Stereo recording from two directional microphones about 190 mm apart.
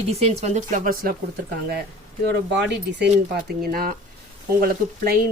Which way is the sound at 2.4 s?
65° right (ahead or behind).